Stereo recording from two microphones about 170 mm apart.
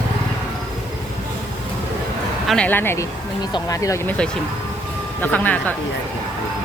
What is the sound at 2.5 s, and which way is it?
Speech, 10° left (ahead or behind).